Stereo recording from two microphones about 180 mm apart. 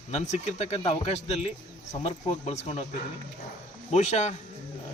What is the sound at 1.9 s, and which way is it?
Speech, 40° left (ahead or behind).